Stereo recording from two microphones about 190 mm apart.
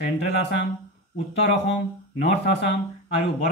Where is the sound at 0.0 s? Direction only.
65° left (ahead or behind).